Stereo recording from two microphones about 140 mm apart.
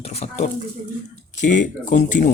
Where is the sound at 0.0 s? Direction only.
50° left (ahead or behind).